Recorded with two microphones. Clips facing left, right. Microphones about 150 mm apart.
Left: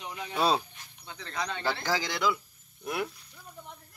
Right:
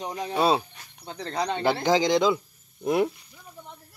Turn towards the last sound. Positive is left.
turn(degrees=-25)  # may be behind; listen again after turning